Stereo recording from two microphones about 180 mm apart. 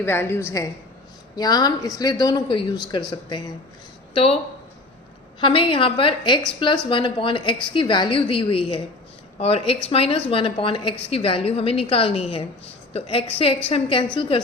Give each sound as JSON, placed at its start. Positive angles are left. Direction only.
{"t": 0.0, "sound": "a woman's voice", "side_deg": 10}
{"t": 4.1, "sound": "speech", "side_deg": 35}
{"t": 5.4, "sound": "a woman's voice", "side_deg": 30}